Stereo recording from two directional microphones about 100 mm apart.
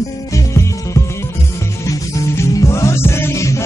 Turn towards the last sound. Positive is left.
turn(degrees=30)  # may be behind; listen again after turning